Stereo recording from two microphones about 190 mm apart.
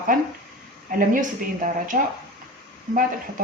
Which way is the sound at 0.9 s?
45° right (ahead or behind).